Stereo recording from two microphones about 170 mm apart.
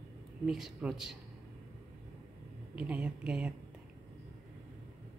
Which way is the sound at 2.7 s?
5° right (ahead or behind).